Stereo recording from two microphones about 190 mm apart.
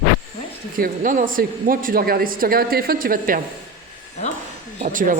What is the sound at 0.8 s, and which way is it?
Speech, 45° right (ahead or behind).